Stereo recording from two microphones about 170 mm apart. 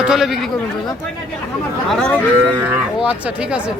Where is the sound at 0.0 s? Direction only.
5° right (ahead or behind).